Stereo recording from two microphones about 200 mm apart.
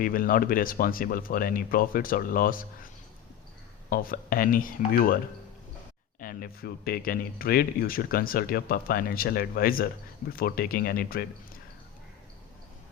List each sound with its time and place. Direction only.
0.0 s speech: 45° left (ahead or behind)
6.1 s speech: 45° left (ahead or behind)